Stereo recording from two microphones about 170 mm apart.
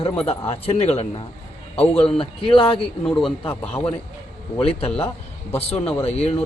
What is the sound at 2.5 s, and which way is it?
Speech, 30° left (ahead or behind).